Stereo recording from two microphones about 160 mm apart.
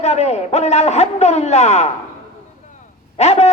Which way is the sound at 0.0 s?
45° left (ahead or behind).